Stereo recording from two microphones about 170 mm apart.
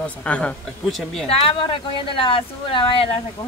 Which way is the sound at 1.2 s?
35° left (ahead or behind).